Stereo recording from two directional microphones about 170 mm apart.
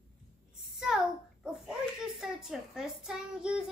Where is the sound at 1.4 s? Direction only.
5° right (ahead or behind).